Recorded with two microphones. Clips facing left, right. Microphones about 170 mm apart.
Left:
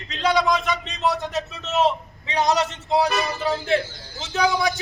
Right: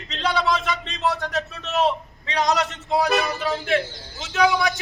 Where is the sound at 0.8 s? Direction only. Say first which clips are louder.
Left 1 dB; 15° left (ahead or behind).